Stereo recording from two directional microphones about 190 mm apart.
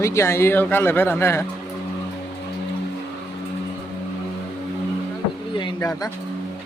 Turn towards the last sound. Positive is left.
turn(degrees=25)  # may be behind; listen again after turning